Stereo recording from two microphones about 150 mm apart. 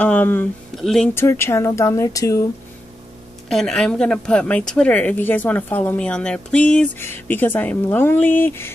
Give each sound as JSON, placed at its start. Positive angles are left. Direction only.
{"t": 0.0, "sound": "speech", "side_deg": 10}
{"t": 1.1, "sound": "speech", "side_deg": 15}
{"t": 3.4, "sound": "speech", "side_deg": 5}